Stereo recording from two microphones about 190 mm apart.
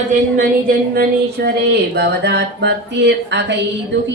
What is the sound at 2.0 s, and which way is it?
Speech, 65° right (ahead or behind).